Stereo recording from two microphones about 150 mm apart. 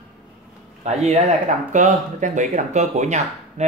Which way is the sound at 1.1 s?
55° right (ahead or behind).